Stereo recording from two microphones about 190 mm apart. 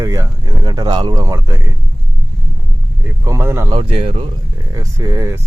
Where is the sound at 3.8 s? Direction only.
30° right (ahead or behind).